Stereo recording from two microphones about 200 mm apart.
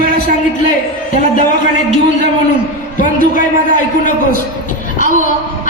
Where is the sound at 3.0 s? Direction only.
40° left (ahead or behind).